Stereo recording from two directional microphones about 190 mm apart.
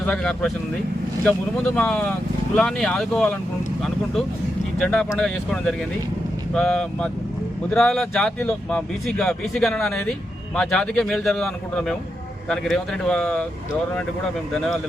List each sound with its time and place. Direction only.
0.0 s speech: 5° left (ahead or behind)
4.8 s speech: 5° left (ahead or behind)
14.5 s speech: centre (ahead or behind)